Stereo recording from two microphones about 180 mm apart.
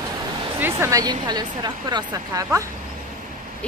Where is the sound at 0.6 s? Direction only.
15° right (ahead or behind).